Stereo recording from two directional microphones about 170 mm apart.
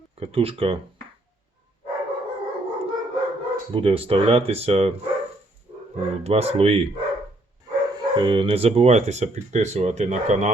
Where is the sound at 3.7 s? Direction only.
35° right (ahead or behind).